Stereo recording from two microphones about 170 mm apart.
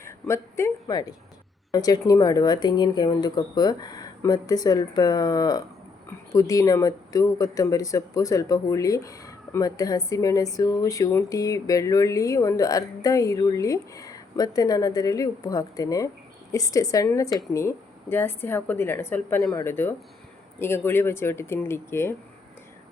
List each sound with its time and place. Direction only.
0.0 s a woman's voice: 15° left (ahead or behind)